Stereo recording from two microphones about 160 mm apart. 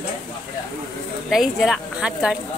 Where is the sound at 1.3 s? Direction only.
Centre (ahead or behind).